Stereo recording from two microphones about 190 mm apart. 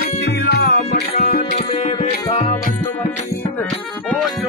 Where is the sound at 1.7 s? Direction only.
30° left (ahead or behind).